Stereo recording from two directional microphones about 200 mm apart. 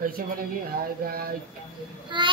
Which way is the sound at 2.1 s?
25° right (ahead or behind).